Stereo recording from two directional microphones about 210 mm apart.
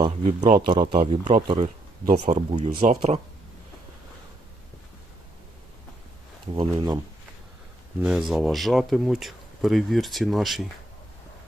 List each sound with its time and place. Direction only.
0.0 s speech: 35° right (ahead or behind)
0.8 s speech: 25° right (ahead or behind)
6.5 s speech: 25° right (ahead or behind)
8.0 s speech: 5° right (ahead or behind)